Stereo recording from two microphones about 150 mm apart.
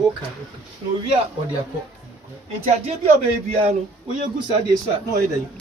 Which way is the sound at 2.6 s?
45° right (ahead or behind).